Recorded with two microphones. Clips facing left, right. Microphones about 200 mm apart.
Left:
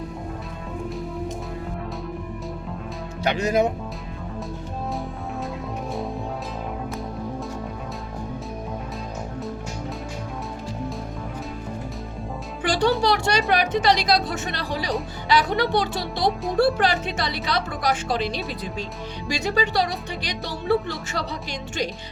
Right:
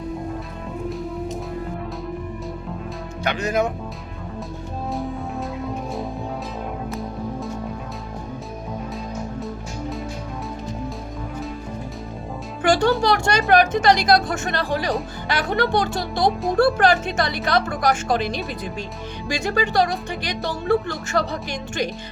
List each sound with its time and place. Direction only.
3.2 s speech: 30° left (ahead or behind)
12.6 s music: 50° right (ahead or behind)
13.0 s speech: 50° right (ahead or behind)